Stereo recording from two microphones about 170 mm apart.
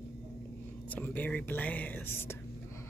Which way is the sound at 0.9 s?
10° left (ahead or behind).